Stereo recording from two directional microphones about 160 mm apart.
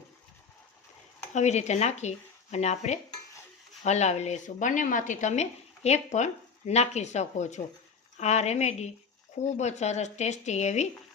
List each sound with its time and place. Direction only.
1.3 s a woman's voice: 45° left (ahead or behind)